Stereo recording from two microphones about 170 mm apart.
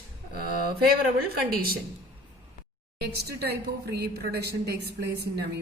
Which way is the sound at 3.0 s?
70° right (ahead or behind).